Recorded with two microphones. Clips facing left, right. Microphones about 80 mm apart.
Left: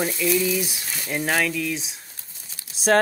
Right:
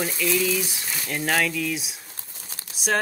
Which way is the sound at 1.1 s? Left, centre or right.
Centre.